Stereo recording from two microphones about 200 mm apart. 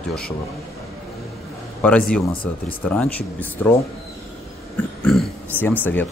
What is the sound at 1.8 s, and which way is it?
Speech, 5° left (ahead or behind).